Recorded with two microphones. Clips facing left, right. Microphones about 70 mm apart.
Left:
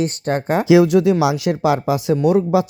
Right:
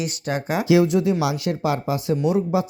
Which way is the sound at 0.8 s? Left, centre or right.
Left.